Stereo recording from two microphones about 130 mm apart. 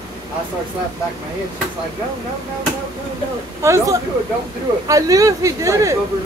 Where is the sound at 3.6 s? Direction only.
25° right (ahead or behind).